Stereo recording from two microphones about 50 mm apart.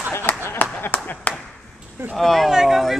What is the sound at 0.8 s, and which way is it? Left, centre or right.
Clapping, left.